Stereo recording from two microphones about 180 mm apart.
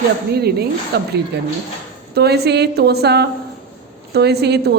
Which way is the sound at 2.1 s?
65° right (ahead or behind).